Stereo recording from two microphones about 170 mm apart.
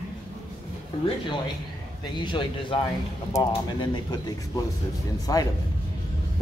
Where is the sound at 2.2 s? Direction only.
30° left (ahead or behind).